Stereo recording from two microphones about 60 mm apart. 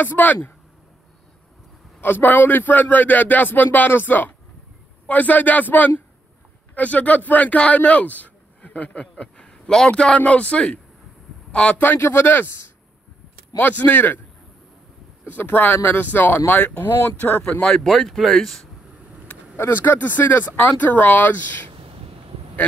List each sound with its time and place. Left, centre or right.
0.0 s a man's voice: left
2.0 s a man's voice: left; by 10.8 s centre
11.7 s a man's voice: left
15.2 s a man's voice: left
17.4 s speech: centre
17.7 s speech: centre
19.5 s a man's voice: left